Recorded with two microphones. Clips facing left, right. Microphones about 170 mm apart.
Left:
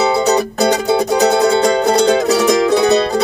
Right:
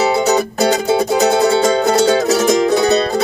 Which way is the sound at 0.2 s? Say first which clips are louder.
Even; 5° right (ahead or behind).